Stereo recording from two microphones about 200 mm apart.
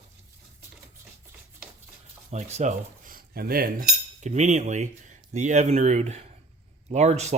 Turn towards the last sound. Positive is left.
turn(degrees=-35)  # may be behind; listen again after turning